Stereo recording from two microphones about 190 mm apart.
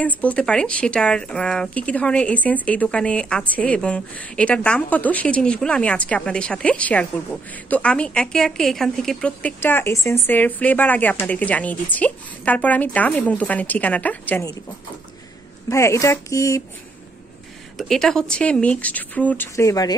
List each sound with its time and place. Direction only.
0.0 s speech: 5° left (ahead or behind)
15.7 s speech: 15° left (ahead or behind)
17.7 s speech: centre (ahead or behind)